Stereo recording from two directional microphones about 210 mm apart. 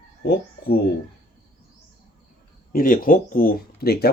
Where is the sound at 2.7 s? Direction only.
40° left (ahead or behind).